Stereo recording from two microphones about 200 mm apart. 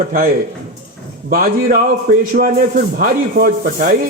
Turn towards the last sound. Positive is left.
turn(degrees=-45)  # may be behind; listen again after turning